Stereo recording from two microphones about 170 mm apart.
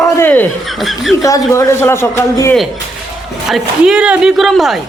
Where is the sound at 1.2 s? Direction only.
20° left (ahead or behind).